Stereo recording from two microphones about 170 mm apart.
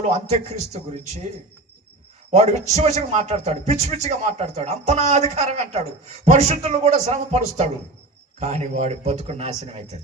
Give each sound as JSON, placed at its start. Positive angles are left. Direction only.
{"t": 0.0, "sound": "a man's voice", "side_deg": -40}
{"t": 2.3, "sound": "a man's voice", "side_deg": -40}